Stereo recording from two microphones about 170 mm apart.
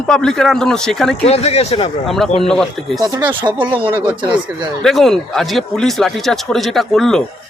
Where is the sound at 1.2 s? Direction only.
40° left (ahead or behind).